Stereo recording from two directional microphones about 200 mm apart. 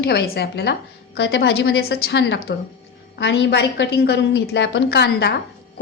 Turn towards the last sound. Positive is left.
turn(degrees=55)  # may be behind; listen again after turning